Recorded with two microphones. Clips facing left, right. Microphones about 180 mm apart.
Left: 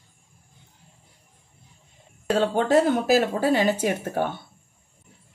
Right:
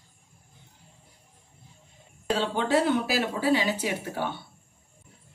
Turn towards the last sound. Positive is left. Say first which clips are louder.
# left 5 dB
turn(degrees=50)  # may be behind; listen again after turning